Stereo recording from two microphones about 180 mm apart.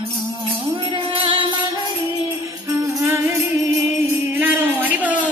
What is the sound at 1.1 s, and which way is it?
Music, 30° right (ahead or behind).